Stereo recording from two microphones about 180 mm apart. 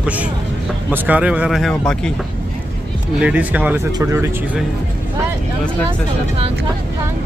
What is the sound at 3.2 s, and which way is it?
Speech, 10° right (ahead or behind).